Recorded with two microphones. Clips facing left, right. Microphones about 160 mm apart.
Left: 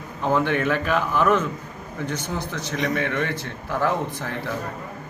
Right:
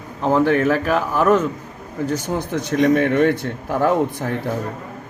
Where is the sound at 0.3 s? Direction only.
35° right (ahead or behind).